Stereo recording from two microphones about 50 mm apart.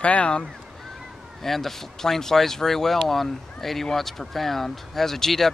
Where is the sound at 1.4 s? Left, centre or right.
Centre.